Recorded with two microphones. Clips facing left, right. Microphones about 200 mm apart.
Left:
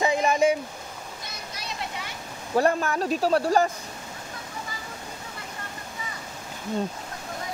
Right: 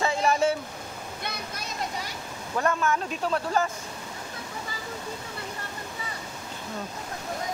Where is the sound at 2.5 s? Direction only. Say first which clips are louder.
Left 3 dB; 35° left (ahead or behind).